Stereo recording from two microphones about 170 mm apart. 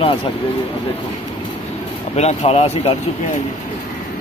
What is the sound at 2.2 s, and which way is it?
Speech, 40° left (ahead or behind).